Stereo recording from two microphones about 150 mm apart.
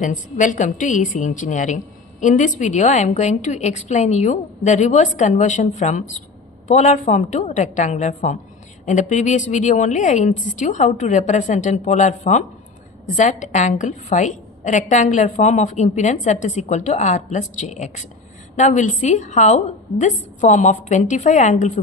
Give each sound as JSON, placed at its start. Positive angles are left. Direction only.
{"t": 0.0, "sound": "a woman's voice", "side_deg": 60}